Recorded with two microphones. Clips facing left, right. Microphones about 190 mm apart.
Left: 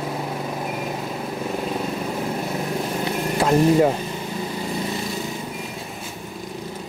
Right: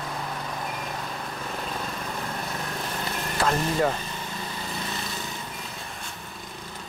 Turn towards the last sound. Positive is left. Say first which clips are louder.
# left 7 dB
turn(degrees=0)  # may be behind; listen again after turning